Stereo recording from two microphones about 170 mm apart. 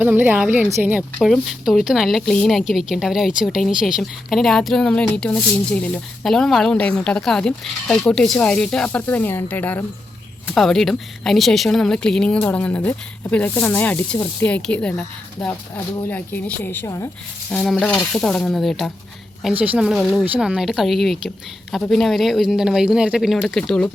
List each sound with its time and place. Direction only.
0.0 s a woman's voice: 10° right (ahead or behind)